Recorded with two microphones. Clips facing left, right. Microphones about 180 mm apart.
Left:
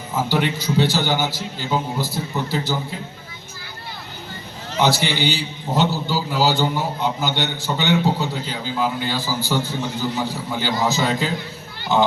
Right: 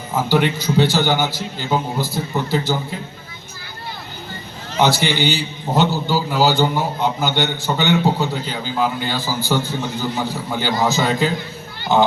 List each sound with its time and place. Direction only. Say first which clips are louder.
0.3 s a man's voice: right 5 dB; 55° right (ahead or behind)
4.8 s a man's voice: right 2 dB; 55° right (ahead or behind)